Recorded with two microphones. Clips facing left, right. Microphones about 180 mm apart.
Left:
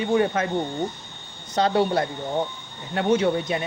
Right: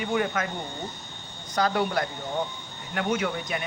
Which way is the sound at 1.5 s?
30° left (ahead or behind).